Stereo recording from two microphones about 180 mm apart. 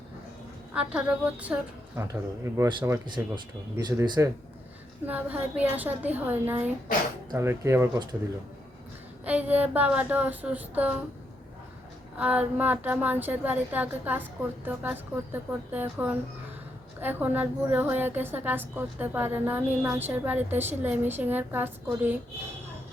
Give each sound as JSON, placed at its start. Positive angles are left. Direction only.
{"t": 0.7, "sound": "a woman's voice", "side_deg": -5}
{"t": 5.0, "sound": "a woman's voice", "side_deg": -10}
{"t": 9.2, "sound": "a woman's voice", "side_deg": -10}
{"t": 12.1, "sound": "a woman's voice", "side_deg": -10}